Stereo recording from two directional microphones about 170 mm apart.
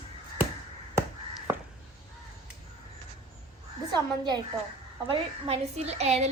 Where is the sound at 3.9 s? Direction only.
25° right (ahead or behind).